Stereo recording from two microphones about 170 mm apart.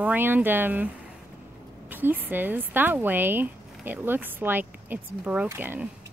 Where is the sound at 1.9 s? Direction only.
10° right (ahead or behind).